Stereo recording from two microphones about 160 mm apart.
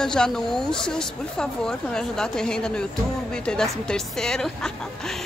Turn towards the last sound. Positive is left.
turn(degrees=0)  # may be behind; listen again after turning